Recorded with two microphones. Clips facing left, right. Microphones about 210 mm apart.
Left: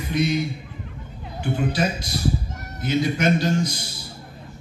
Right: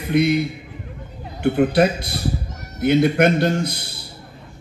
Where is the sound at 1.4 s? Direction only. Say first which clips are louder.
Right 8 dB; 60° right (ahead or behind).